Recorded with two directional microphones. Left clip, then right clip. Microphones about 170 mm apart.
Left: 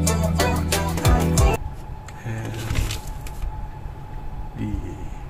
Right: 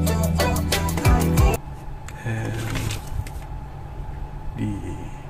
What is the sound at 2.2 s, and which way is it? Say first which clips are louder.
Printer: right 4 dB; 15° right (ahead or behind).